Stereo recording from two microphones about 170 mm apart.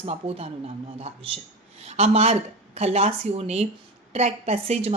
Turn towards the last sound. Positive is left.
turn(degrees=-40)  # may be behind; listen again after turning